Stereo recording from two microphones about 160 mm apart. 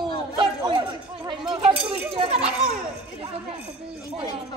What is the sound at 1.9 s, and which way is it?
Children playing, 35° right (ahead or behind).